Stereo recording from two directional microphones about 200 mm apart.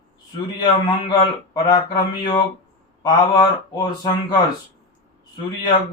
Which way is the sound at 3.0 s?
20° left (ahead or behind).